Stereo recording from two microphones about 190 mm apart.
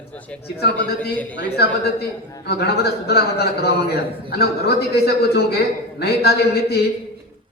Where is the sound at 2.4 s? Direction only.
60° left (ahead or behind).